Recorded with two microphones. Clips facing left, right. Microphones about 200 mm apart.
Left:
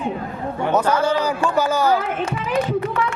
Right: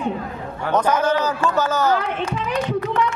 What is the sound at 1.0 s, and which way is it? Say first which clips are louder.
Speech: even; 10° left (ahead or behind).